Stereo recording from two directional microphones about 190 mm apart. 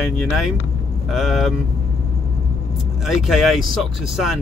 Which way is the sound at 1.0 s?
Centre (ahead or behind).